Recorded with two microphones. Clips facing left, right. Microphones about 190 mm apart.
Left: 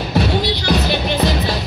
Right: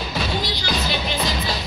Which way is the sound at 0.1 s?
65° left (ahead or behind).